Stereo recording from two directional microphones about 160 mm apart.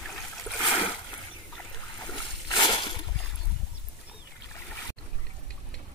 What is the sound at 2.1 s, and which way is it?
Splash, 25° left (ahead or behind).